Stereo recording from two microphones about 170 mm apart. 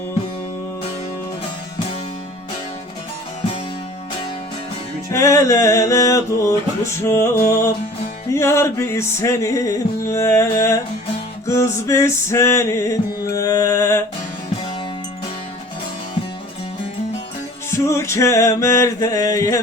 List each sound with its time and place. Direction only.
5.1 s music: 15° left (ahead or behind)
17.7 s music: 15° left (ahead or behind)